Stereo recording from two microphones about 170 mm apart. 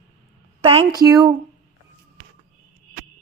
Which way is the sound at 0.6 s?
35° right (ahead or behind).